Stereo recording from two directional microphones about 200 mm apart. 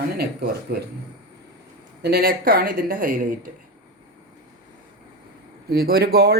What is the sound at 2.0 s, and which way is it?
Speech, 50° right (ahead or behind).